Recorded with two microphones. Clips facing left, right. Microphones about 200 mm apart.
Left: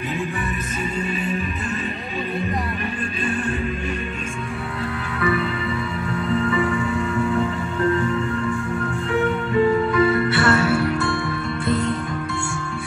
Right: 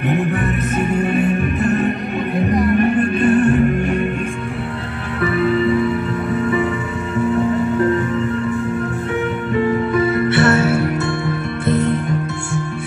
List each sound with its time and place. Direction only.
1.1 s music: 60° right (ahead or behind)
9.9 s music: 25° right (ahead or behind)